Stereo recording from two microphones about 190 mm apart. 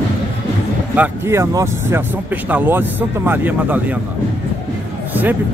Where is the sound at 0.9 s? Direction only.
10° right (ahead or behind).